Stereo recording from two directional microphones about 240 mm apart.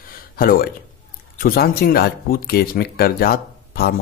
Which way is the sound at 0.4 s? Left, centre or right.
Left.